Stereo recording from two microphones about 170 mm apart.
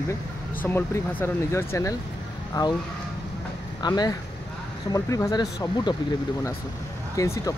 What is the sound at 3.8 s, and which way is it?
Speech, 25° left (ahead or behind).